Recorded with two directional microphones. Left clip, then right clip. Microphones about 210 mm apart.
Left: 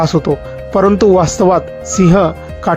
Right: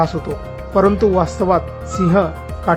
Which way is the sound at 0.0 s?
25° left (ahead or behind).